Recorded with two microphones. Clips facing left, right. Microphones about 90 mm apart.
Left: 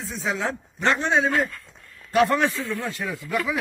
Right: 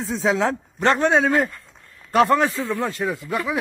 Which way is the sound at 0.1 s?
90° right.